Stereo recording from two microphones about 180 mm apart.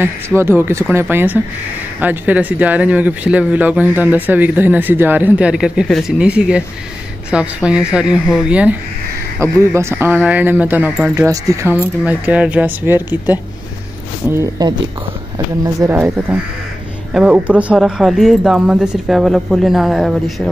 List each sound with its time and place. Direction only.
0.0 s speech: 15° right (ahead or behind)